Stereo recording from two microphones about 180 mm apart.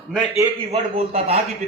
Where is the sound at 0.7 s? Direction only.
35° right (ahead or behind).